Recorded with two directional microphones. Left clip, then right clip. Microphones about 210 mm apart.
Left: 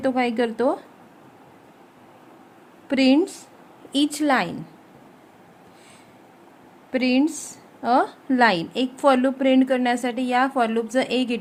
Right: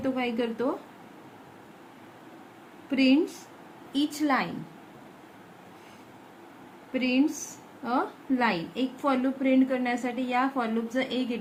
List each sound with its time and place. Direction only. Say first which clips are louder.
0.0 s a woman's voice: left 7 dB; 55° left (ahead or behind)
2.9 s a woman's voice: left 5 dB; 55° left (ahead or behind)
6.9 s a woman's voice: left 5 dB; 55° left (ahead or behind)